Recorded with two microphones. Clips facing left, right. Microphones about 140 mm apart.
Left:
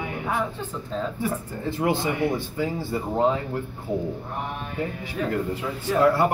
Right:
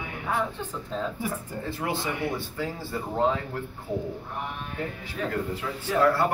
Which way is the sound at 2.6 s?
10° left (ahead or behind).